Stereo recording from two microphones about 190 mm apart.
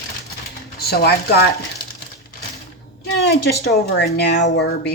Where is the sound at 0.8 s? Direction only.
55° left (ahead or behind).